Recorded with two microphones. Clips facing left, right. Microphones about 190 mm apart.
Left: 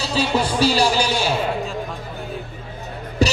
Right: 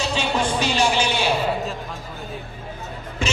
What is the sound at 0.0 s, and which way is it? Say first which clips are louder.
Speech: left 2 dB; 35° left (ahead or behind).